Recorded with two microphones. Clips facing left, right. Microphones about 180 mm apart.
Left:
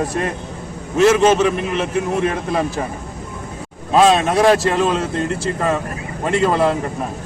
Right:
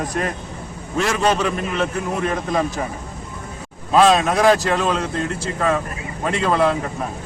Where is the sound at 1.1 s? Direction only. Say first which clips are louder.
Left 6 dB; 20° left (ahead or behind).